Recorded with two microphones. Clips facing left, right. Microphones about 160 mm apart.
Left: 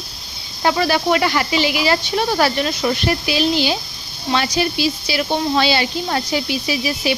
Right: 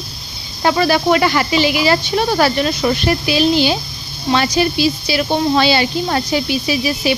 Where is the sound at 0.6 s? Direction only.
55° right (ahead or behind).